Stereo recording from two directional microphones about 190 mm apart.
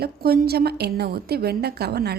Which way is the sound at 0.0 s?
55° right (ahead or behind).